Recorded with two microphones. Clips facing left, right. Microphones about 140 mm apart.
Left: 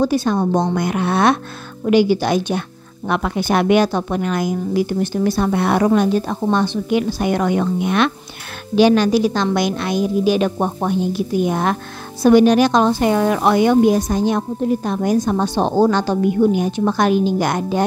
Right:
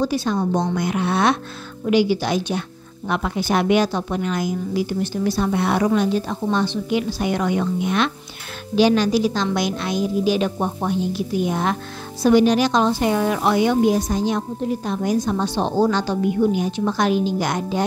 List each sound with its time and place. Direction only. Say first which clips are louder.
0.0 s a woman's voice: left 4 dB; 50° left (ahead or behind)